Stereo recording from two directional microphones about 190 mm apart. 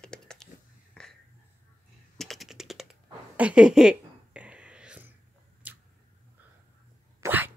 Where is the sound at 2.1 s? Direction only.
Centre (ahead or behind).